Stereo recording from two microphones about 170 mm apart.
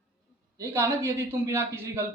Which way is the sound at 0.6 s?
20° right (ahead or behind).